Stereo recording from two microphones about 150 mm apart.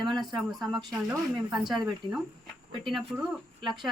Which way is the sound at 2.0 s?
30° right (ahead or behind).